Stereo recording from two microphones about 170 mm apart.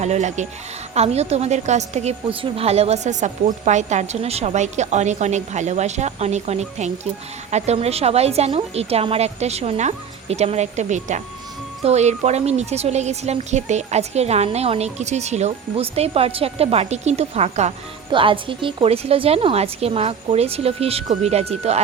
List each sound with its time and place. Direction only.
0.0 s speech: 40° right (ahead or behind)